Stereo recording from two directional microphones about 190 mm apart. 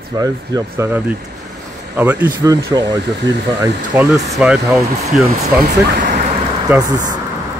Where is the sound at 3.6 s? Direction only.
15° right (ahead or behind).